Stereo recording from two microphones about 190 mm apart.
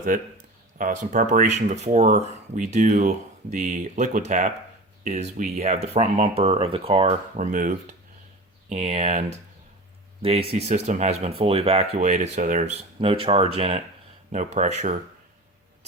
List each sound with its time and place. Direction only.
0.1 s speech: 50° right (ahead or behind)
10.5 s speech: 35° right (ahead or behind)